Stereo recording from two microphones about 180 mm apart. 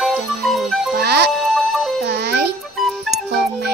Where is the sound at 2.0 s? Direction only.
65° right (ahead or behind).